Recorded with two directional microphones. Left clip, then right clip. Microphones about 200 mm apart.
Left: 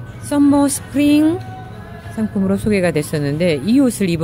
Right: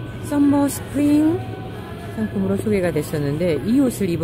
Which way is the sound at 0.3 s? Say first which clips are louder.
Left 4 dB; 30° left (ahead or behind).